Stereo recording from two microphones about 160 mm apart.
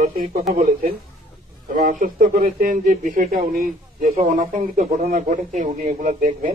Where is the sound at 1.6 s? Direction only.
60° right (ahead or behind).